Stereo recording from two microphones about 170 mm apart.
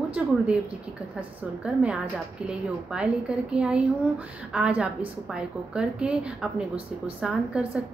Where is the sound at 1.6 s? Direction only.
10° right (ahead or behind).